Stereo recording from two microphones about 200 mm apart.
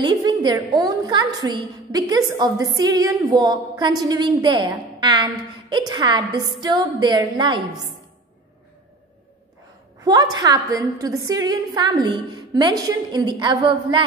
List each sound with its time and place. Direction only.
0.0 s a woman's voice: 20° right (ahead or behind)
10.0 s a woman's voice: 20° right (ahead or behind)